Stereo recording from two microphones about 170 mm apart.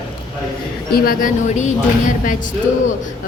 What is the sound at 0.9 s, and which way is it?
Speech, 55° left (ahead or behind).